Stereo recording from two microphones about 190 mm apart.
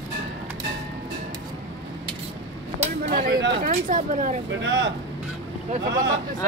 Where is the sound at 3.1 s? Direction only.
50° right (ahead or behind).